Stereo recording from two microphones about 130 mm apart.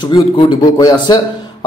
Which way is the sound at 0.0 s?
35° left (ahead or behind).